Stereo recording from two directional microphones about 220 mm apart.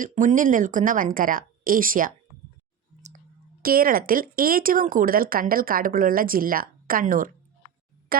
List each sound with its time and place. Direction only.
0.0 s speech: 35° right (ahead or behind)
3.6 s speech: 40° right (ahead or behind)